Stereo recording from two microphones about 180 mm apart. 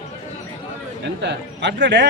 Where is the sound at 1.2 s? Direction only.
75° right (ahead or behind).